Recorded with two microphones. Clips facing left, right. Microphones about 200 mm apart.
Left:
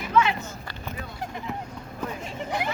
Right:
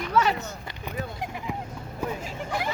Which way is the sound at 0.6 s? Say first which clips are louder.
Even; 20° right (ahead or behind).